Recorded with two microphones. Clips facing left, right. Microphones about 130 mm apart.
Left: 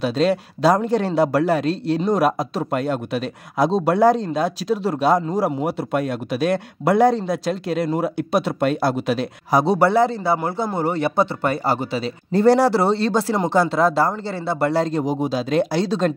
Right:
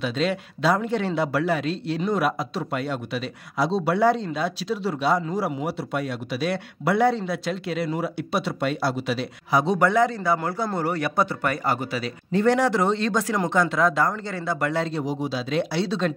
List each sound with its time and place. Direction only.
0.0 s a man's voice: 40° left (ahead or behind)